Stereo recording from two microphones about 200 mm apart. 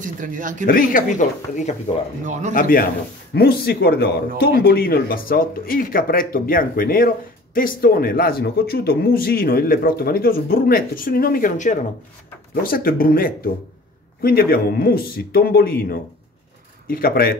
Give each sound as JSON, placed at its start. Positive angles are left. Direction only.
{"t": 0.0, "sound": "speech", "side_deg": -40}
{"t": 0.7, "sound": "speech", "side_deg": 45}